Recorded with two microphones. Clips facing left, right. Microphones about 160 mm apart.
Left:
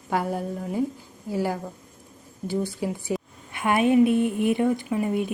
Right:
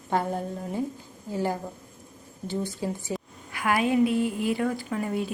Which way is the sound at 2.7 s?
15° left (ahead or behind).